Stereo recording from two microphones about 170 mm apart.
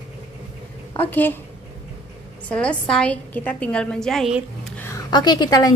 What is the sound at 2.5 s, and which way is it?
A woman's voice, 5° left (ahead or behind).